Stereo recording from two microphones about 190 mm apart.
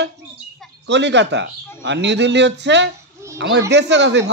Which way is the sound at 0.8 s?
65° right (ahead or behind).